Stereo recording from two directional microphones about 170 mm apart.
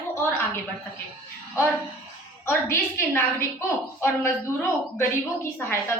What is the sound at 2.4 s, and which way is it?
A woman's voice, 15° left (ahead or behind).